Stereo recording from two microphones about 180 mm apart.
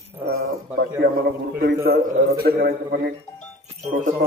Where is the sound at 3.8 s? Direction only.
45° right (ahead or behind).